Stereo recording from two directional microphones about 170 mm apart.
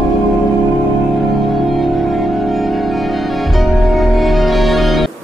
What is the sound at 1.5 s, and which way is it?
Music, centre (ahead or behind).